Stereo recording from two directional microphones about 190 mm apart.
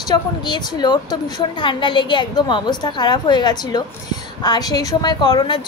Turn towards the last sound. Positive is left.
turn(degrees=25)  # may be behind; listen again after turning